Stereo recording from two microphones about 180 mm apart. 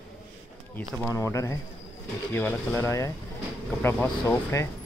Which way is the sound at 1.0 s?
15° left (ahead or behind).